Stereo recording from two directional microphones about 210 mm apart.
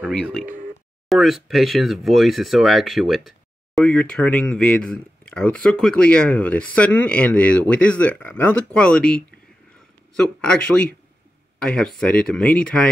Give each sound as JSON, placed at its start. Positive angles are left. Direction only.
{"t": 0.0, "sound": "speech", "side_deg": 5}
{"t": 10.4, "sound": "speech", "side_deg": 5}